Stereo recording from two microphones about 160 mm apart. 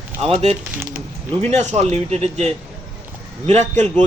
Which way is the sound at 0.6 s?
15° right (ahead or behind).